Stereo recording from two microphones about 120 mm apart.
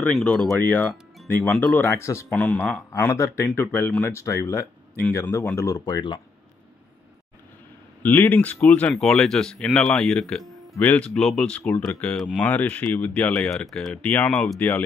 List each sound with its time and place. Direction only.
0.0 s speech: 10° left (ahead or behind)
2.2 s speech: 10° left (ahead or behind)
5.9 s speech: 40° left (ahead or behind)
8.0 s speech: 15° left (ahead or behind)
14.3 s speech: centre (ahead or behind)